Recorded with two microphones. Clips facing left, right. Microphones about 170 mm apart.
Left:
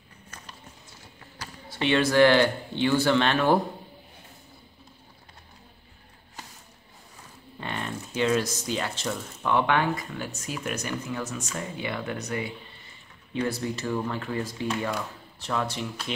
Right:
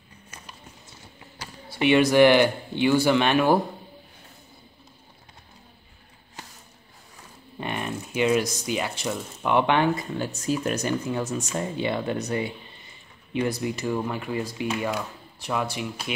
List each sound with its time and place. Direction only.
1.7 s speech: 15° right (ahead or behind)
7.6 s speech: 15° right (ahead or behind)
13.3 s speech: 15° right (ahead or behind)